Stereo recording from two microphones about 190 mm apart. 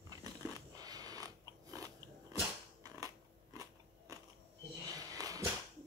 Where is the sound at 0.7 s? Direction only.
20° right (ahead or behind).